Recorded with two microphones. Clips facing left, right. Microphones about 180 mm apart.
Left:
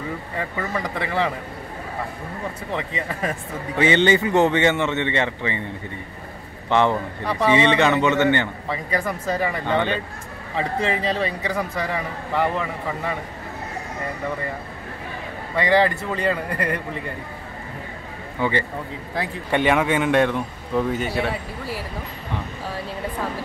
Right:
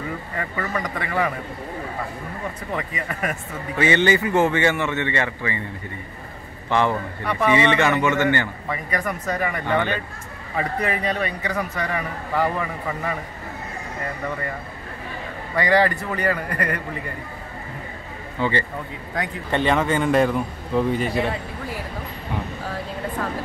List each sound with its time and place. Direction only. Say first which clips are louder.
0.4 s a man's voice: even; 25° left (ahead or behind)
2.7 s a man's voice: left 1 dB; 25° left (ahead or behind)
6.7 s a man's voice: left 2 dB; 20° left (ahead or behind)
15.6 s a man's voice: even; 25° left (ahead or behind)
18.4 s a man's voice: even; 15° left (ahead or behind)